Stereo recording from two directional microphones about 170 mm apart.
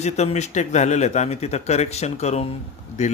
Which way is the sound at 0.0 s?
40° left (ahead or behind).